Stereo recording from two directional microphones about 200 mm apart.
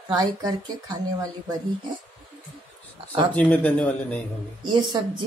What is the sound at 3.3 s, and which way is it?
Speech, 5° left (ahead or behind).